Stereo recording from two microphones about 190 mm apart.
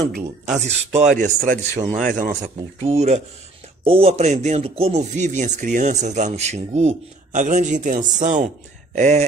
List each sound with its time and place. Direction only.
0.5 s speech: 35° right (ahead or behind)